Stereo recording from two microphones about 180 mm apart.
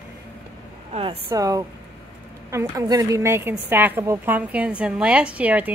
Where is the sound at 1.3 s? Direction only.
20° right (ahead or behind).